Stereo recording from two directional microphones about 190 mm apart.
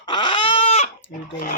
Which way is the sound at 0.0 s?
25° left (ahead or behind).